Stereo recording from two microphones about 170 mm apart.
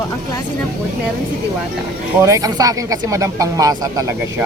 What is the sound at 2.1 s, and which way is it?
Speech, 15° right (ahead or behind).